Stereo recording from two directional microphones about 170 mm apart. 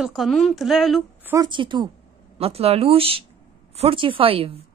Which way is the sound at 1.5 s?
30° right (ahead or behind).